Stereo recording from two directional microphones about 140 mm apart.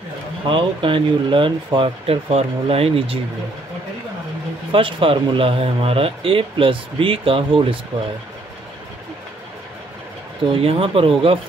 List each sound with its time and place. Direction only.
0.5 s speech: 40° right (ahead or behind)
4.7 s speech: 40° right (ahead or behind)
10.5 s speech: 40° right (ahead or behind)